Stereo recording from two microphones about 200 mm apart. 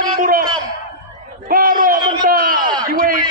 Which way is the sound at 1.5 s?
45° right (ahead or behind).